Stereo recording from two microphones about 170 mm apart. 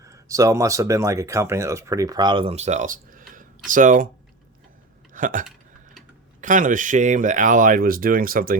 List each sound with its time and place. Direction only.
0.0 s speech: 20° right (ahead or behind); by 4.1 s 50° right (ahead or behind)
5.1 s speech: 50° right (ahead or behind)